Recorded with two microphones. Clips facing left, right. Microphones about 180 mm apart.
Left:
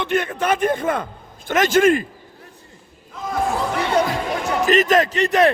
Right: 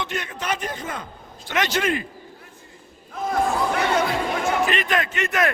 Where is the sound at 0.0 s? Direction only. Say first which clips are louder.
Left 8 dB; 55° left (ahead or behind).